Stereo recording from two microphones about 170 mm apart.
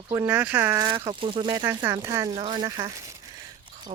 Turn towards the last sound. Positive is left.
turn(degrees=-20)  # may be behind; listen again after turning